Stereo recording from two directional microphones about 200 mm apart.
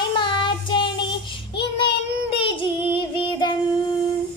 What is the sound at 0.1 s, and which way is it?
Child singing, 25° left (ahead or behind).